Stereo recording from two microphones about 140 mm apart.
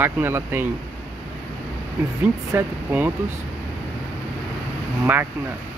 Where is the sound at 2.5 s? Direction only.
15° right (ahead or behind).